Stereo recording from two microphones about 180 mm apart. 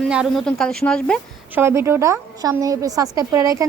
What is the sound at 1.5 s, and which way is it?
Speech, 15° right (ahead or behind).